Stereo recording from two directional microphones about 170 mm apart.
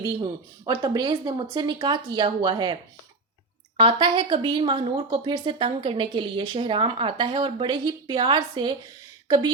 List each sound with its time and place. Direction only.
0.0 s a woman's voice: 25° right (ahead or behind)
3.8 s a woman's voice: 30° right (ahead or behind)